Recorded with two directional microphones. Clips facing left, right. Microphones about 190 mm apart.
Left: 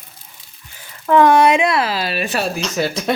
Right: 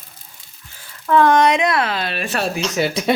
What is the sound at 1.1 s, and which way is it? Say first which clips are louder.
Speech: left 2 dB; 15° left (ahead or behind).